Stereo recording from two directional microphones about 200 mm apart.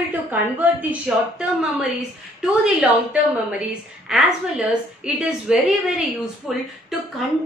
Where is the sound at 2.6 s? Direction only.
5° right (ahead or behind).